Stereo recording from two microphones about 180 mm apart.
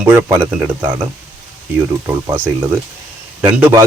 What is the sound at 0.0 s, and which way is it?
Speech, 15° right (ahead or behind).